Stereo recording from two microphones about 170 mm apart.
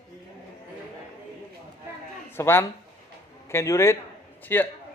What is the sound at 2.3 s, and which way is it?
A man's voice, 15° left (ahead or behind).